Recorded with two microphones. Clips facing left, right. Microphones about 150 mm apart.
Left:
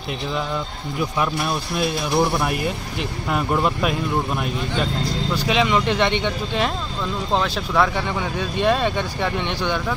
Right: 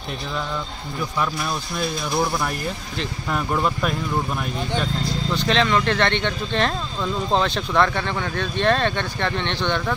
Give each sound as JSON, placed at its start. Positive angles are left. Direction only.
{"t": 1.8, "sound": "speech", "side_deg": 0}
{"t": 3.0, "sound": "speech", "side_deg": 10}
{"t": 5.3, "sound": "speech", "side_deg": 10}